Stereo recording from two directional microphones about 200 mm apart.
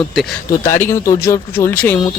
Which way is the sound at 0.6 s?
15° left (ahead or behind).